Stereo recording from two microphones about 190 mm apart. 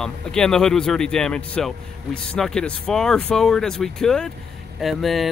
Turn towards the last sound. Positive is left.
turn(degrees=0)  # may be behind; listen again after turning